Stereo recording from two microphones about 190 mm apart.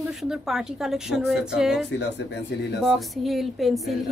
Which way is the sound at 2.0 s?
60° left (ahead or behind).